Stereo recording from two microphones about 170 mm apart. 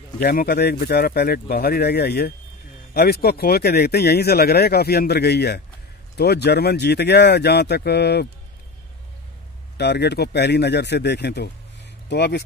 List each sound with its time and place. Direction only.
0.2 s speech: 60° left (ahead or behind)
9.8 s speech: 80° left